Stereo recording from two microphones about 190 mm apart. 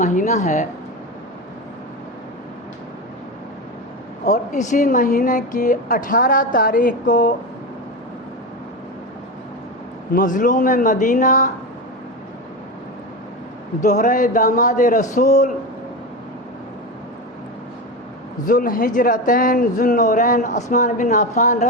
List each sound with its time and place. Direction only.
0.0 s a woman's voice: 40° left (ahead or behind)
4.3 s speech: 40° left (ahead or behind)
10.2 s speech: 45° left (ahead or behind)
13.8 s a woman's voice: 40° left (ahead or behind)
18.4 s speech: 45° left (ahead or behind)